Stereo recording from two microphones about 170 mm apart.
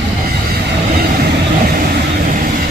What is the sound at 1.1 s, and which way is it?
Vehicle, 55° right (ahead or behind).